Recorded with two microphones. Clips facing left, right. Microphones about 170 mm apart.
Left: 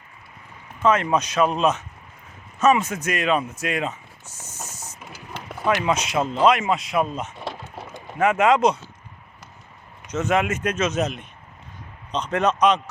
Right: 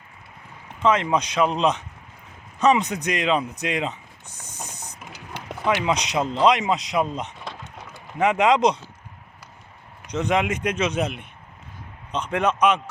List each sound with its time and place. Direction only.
0.8 s speech: 15° right (ahead or behind)
4.6 s printer: 5° left (ahead or behind)
5.1 s a sound: 15° right (ahead or behind)
6.4 s speech: 20° right (ahead or behind)
8.2 s speech: 15° right (ahead or behind)
10.1 s speech: 15° right (ahead or behind)
12.1 s speech: 10° right (ahead or behind)